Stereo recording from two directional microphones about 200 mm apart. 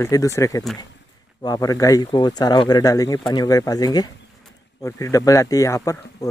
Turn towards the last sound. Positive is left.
turn(degrees=15)  # may be behind; listen again after turning